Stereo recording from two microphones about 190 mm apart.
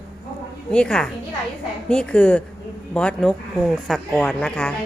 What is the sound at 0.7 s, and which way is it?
A woman's voice, 5° left (ahead or behind).